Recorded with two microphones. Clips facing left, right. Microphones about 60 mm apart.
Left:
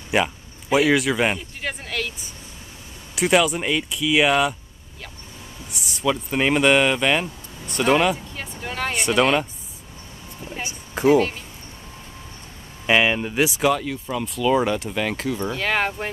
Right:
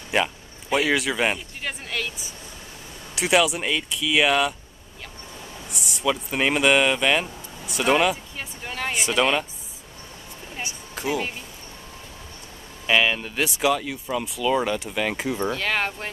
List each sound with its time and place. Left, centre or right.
0.1 s a man's voice: centre
3.2 s speech: centre
5.7 s speech: centre
10.6 s a sound: left
12.8 s speech: centre
13.5 s speech: centre
15.1 s speech: centre
15.5 s speech: centre